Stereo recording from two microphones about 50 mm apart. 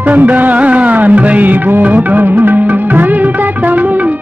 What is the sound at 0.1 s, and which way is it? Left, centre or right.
Music, right.